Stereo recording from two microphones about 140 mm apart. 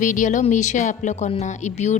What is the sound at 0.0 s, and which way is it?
A woman's voice, 65° left (ahead or behind).